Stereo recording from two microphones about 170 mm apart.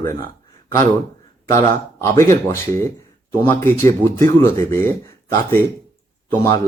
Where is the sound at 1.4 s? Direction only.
15° left (ahead or behind).